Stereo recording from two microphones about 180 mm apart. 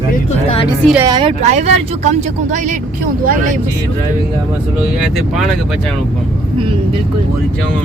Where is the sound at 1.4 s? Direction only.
40° right (ahead or behind).